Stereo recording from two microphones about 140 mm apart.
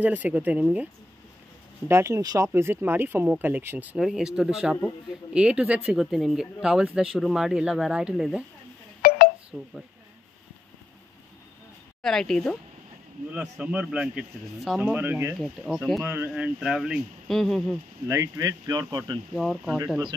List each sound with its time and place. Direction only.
0.0 s speech: 10° right (ahead or behind)
1.9 s speech: 20° right (ahead or behind)
9.0 s telephone dialing: 90° left
9.5 s speech: 5° right (ahead or behind)
12.0 s speech: 5° left (ahead or behind)
13.3 s speech: 10° right (ahead or behind)
14.8 s speech: 10° right (ahead or behind)
15.3 s speech: centre (ahead or behind)
16.0 s speech: 15° right (ahead or behind); by 17.7 s centre (ahead or behind)
18.0 s speech: 20° right (ahead or behind)
19.3 s speech: centre (ahead or behind)